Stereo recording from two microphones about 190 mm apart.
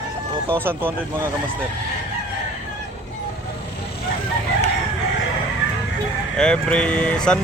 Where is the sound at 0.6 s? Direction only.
10° right (ahead or behind).